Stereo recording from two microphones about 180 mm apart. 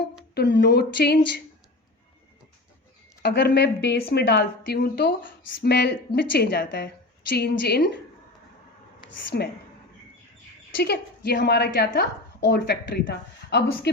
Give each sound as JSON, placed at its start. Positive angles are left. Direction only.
{"t": 0.3, "sound": "speech", "side_deg": 65}
{"t": 3.2, "sound": "speech", "side_deg": 65}
{"t": 9.3, "sound": "speech", "side_deg": 60}
{"t": 10.8, "sound": "speech", "side_deg": 65}